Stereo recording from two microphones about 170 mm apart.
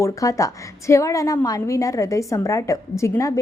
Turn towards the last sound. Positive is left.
turn(degrees=20)  # may be behind; listen again after turning